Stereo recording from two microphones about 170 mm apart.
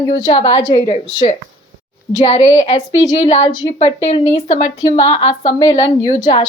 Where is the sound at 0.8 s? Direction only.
45° left (ahead or behind).